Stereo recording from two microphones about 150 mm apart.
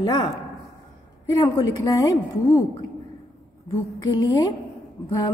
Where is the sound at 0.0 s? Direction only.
30° left (ahead or behind).